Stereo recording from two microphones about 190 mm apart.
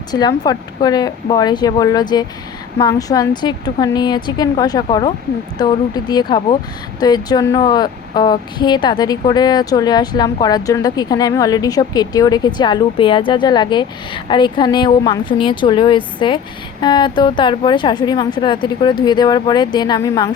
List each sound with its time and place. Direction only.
0.1 s speech: 20° left (ahead or behind)